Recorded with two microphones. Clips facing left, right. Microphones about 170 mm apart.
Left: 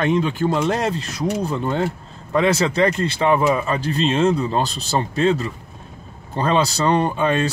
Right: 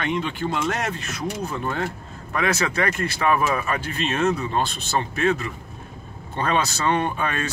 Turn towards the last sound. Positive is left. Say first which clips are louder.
# left 6 dB
turn(degrees=25)  # may be behind; listen again after turning